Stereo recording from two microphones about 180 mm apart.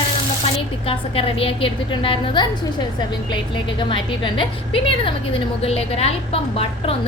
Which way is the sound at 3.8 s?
25° left (ahead or behind).